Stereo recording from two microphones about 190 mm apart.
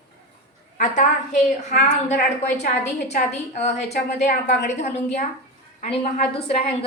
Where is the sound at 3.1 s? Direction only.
35° left (ahead or behind).